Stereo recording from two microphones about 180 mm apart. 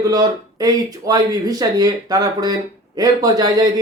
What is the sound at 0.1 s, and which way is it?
A man's voice, 20° right (ahead or behind).